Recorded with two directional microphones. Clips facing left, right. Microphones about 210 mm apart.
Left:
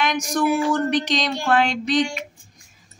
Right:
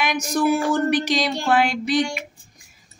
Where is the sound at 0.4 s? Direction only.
40° right (ahead or behind).